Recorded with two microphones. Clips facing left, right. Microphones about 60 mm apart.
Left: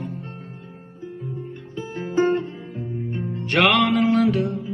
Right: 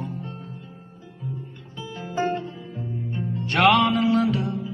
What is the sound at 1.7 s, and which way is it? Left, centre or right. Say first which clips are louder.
Music: left 6 dB; left.